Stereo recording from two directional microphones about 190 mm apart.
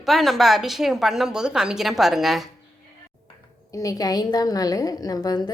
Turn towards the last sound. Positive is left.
turn(degrees=20)  # may be behind; listen again after turning